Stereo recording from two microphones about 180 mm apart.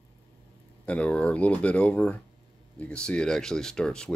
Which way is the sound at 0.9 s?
5° left (ahead or behind).